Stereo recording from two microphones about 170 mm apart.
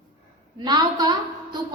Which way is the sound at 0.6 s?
25° right (ahead or behind).